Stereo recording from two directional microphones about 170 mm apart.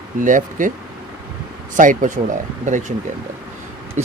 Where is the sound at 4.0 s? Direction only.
45° right (ahead or behind).